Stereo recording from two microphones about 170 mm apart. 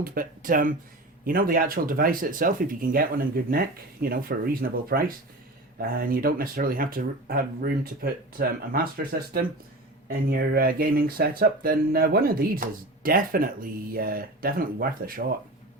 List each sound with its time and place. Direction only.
0.0 s speech: 55° right (ahead or behind)
10.1 s speech: 65° right (ahead or behind)